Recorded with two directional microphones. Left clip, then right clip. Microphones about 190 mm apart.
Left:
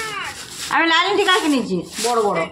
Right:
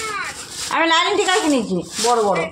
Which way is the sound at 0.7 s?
20° left (ahead or behind).